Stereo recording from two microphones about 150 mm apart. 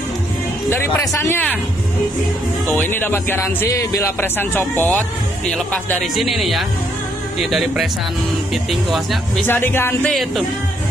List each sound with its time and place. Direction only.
0.7 s speech: 15° left (ahead or behind)
2.7 s speech: 15° left (ahead or behind)
9.5 s speech: 15° left (ahead or behind)